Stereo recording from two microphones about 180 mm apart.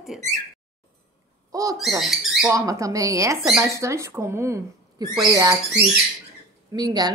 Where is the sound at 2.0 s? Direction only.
Centre (ahead or behind).